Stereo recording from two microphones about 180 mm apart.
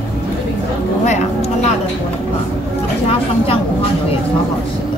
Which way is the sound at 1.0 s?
40° left (ahead or behind).